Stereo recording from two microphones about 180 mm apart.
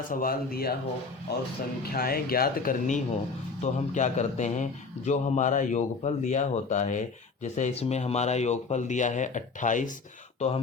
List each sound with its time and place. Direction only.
0.1 s a man's voice: 50° left (ahead or behind); by 10.6 s 35° left (ahead or behind)